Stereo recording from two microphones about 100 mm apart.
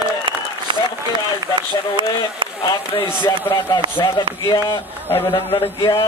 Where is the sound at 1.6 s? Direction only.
55° right (ahead or behind).